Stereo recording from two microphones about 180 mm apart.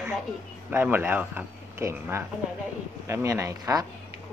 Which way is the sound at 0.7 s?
10° right (ahead or behind).